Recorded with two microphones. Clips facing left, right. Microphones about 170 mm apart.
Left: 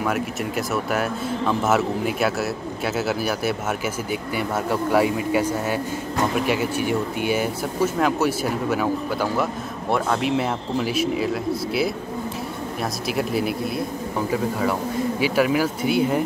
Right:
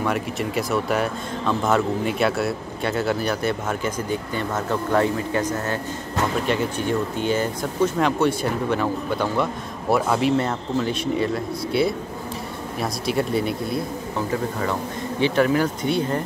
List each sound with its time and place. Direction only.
0.0 s a man's voice: centre (ahead or behind)
10.3 s a man's voice: 10° left (ahead or behind)
13.0 s a man's voice: centre (ahead or behind)